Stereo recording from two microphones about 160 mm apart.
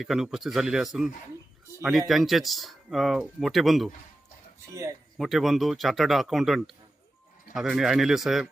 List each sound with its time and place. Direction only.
0.0 s speech: centre (ahead or behind)
4.7 s speech: 20° right (ahead or behind)
5.1 s speech: centre (ahead or behind)